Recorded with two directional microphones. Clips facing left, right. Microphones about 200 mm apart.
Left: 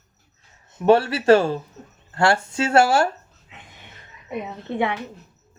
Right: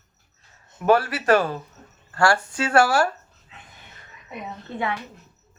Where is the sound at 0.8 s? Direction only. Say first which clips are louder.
Left 4 dB; 25° left (ahead or behind).